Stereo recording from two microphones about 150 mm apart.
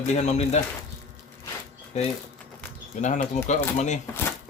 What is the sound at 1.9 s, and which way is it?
Speech, 50° left (ahead or behind).